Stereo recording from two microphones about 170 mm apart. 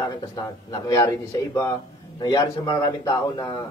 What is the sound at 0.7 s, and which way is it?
A man's voice, 20° left (ahead or behind).